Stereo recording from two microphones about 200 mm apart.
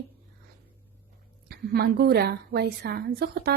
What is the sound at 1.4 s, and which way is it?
A woman's voice, 50° right (ahead or behind).